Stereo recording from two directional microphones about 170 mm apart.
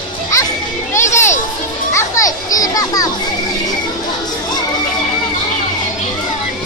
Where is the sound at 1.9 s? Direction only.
20° left (ahead or behind).